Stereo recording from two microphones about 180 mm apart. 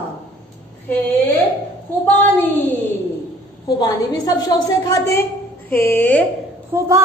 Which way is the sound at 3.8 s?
20° left (ahead or behind).